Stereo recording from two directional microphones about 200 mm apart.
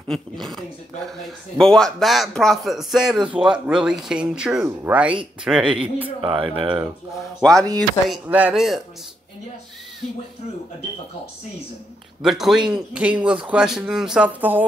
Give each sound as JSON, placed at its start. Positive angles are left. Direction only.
{"t": 0.1, "sound": "a man's voice", "side_deg": 0}
{"t": 1.6, "sound": "a man's voice", "side_deg": 5}
{"t": 6.2, "sound": "speech", "side_deg": -25}
{"t": 7.2, "sound": "a man's voice", "side_deg": 0}
{"t": 12.2, "sound": "a man's voice", "side_deg": 0}